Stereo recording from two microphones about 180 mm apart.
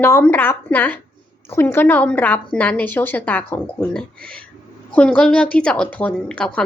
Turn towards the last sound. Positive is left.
turn(degrees=5)  # may be behind; listen again after turning